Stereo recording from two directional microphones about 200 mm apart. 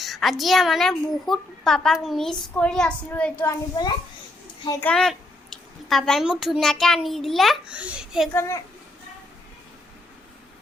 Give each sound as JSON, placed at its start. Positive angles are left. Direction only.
{"t": 0.0, "sound": "a woman's voice", "side_deg": 0}
{"t": 4.6, "sound": "a child's voice", "side_deg": 15}
{"t": 4.9, "sound": "a child's voice", "side_deg": 0}
{"t": 8.3, "sound": "a child's voice", "side_deg": 10}